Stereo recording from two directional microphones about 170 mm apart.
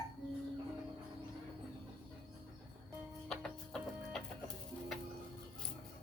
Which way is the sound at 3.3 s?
5° left (ahead or behind).